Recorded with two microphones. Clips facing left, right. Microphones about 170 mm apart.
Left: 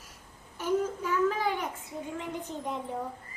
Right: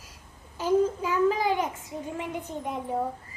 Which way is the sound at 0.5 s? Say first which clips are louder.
Right 5 dB; 90° right.